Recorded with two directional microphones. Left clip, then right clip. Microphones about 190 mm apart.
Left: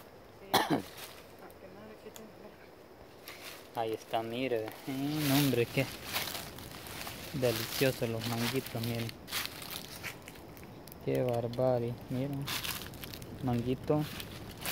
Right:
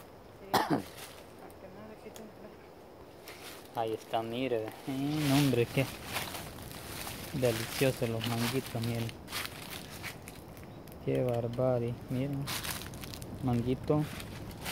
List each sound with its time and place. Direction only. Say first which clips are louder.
0.5 s cough: even; 15° left (ahead or behind)
3.7 s speech: right 1 dB; centre (ahead or behind)
7.1 s a sound: right 1 dB; centre (ahead or behind)
7.5 s speech: even; 10° left (ahead or behind)
11.3 s speech: even; 10° left (ahead or behind)
12.4 s crumpling: left 1 dB; centre (ahead or behind)